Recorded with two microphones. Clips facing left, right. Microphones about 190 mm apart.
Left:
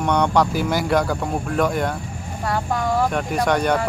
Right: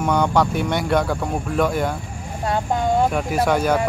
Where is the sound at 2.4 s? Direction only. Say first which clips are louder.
Right 2 dB; 25° right (ahead or behind).